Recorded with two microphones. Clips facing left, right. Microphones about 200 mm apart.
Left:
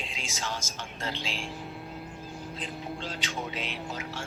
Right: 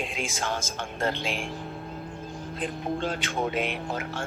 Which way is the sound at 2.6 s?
55° right (ahead or behind).